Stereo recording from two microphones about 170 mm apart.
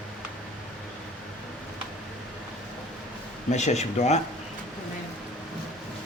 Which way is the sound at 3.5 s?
40° left (ahead or behind).